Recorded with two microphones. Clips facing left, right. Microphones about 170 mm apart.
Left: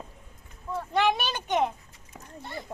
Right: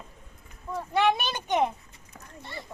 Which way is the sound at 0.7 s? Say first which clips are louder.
Right 1 dB; 5° right (ahead or behind).